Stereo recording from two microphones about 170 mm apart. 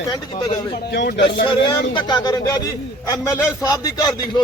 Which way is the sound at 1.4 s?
30° left (ahead or behind).